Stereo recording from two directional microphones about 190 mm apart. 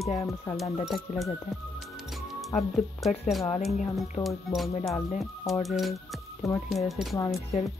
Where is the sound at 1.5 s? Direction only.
Centre (ahead or behind).